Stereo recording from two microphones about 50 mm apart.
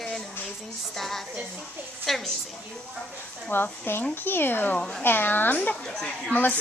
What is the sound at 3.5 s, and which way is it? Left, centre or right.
A woman's voice, left.